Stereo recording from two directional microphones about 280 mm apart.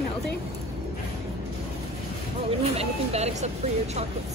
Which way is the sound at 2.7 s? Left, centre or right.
Right.